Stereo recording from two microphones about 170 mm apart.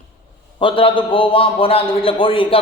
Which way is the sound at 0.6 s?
30° left (ahead or behind).